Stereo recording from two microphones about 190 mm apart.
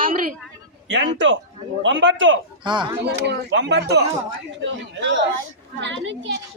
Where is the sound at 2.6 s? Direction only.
25° right (ahead or behind).